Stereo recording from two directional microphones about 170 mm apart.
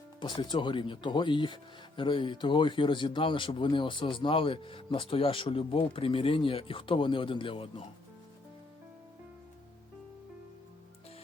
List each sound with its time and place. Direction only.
0.2 s speech: 30° left (ahead or behind)